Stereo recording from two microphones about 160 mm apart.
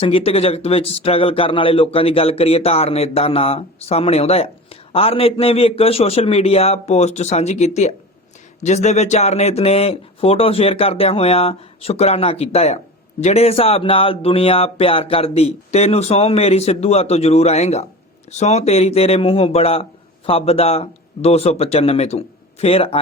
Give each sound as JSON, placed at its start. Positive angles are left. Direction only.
{"t": 0.0, "sound": "speech", "side_deg": 40}